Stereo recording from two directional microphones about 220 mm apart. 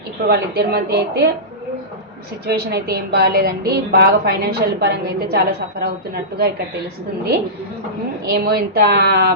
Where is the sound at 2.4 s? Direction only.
45° right (ahead or behind).